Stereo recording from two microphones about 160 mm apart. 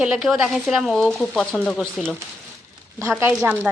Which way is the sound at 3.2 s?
10° right (ahead or behind).